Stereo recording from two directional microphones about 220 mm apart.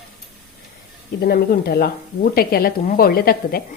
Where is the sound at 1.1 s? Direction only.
45° left (ahead or behind).